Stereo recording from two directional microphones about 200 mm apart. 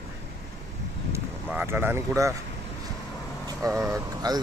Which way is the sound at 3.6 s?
15° right (ahead or behind).